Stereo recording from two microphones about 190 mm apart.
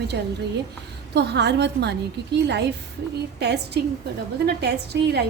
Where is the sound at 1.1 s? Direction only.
60° right (ahead or behind).